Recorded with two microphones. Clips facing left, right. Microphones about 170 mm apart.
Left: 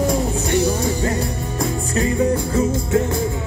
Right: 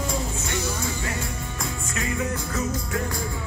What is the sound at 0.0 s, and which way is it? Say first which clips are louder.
Music: left 9 dB; 35° left (ahead or behind).